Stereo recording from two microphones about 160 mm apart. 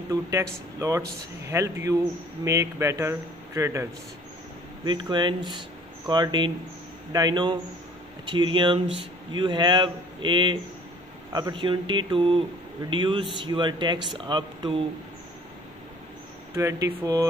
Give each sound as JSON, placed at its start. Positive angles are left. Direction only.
{"t": 0.1, "sound": "a man's voice", "side_deg": -20}
{"t": 4.8, "sound": "speech", "side_deg": -30}
{"t": 16.5, "sound": "speech", "side_deg": -20}